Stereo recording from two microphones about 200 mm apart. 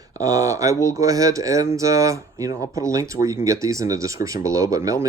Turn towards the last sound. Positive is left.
turn(degrees=-15)  # may be behind; listen again after turning